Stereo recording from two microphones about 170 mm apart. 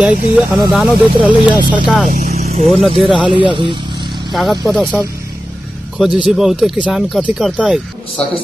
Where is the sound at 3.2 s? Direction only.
30° right (ahead or behind).